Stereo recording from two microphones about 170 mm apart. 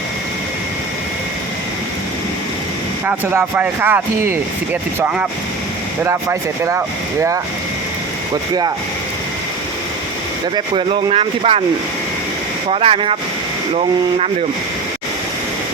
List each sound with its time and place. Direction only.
3.1 s speech: 10° right (ahead or behind)
10.5 s speech: 30° right (ahead or behind)
12.7 s speech: 35° right (ahead or behind)